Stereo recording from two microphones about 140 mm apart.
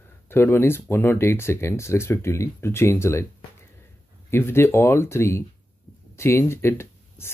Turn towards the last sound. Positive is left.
turn(degrees=20)  # may be behind; listen again after turning